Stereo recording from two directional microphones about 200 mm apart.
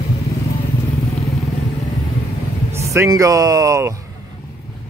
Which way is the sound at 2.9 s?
15° right (ahead or behind).